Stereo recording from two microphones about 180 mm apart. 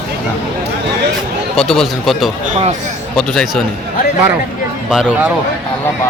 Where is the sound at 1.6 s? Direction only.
Centre (ahead or behind).